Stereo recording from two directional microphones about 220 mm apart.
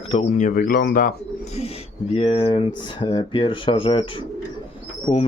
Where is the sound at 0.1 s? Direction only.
30° left (ahead or behind).